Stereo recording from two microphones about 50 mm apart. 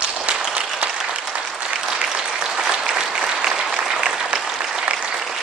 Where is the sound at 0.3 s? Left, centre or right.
Right.